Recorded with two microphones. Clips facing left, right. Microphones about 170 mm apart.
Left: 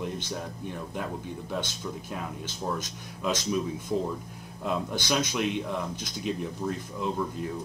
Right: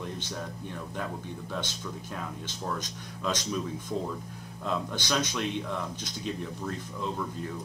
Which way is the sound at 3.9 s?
20° left (ahead or behind).